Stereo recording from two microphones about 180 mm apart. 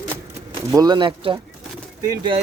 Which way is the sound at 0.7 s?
20° right (ahead or behind).